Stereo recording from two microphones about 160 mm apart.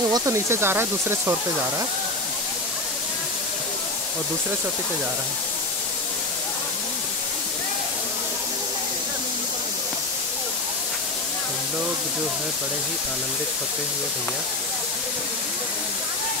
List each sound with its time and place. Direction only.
0.1 s speech: 15° right (ahead or behind)